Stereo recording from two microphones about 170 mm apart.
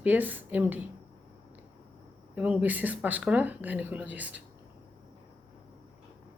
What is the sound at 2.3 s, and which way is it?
Speech, 10° right (ahead or behind).